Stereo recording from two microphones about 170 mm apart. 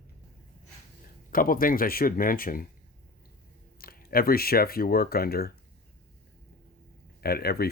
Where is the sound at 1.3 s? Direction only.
55° left (ahead or behind).